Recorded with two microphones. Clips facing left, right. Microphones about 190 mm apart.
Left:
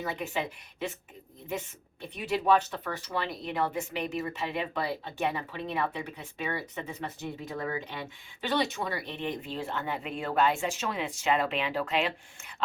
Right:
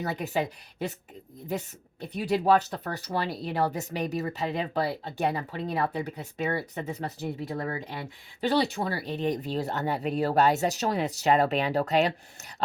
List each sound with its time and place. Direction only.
0.0 s speech: 40° right (ahead or behind)